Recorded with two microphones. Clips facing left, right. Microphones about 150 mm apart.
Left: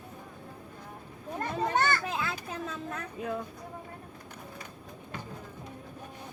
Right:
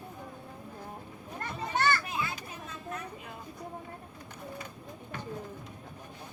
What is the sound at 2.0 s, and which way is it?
Children playing, 90° left.